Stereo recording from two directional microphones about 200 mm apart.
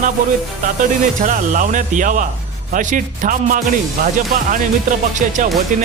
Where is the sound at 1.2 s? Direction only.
45° right (ahead or behind).